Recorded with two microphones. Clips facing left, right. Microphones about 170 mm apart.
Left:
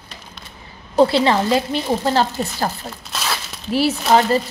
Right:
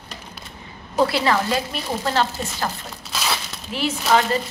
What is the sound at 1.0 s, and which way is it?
Speech, 30° left (ahead or behind).